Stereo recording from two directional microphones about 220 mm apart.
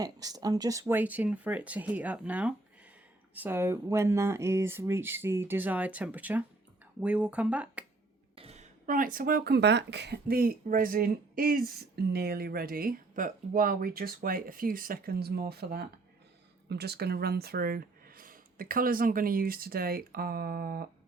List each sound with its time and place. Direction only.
0.0 s speech: 15° right (ahead or behind)
8.4 s speech: 30° right (ahead or behind)